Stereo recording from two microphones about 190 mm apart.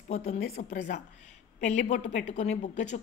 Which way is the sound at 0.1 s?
35° left (ahead or behind).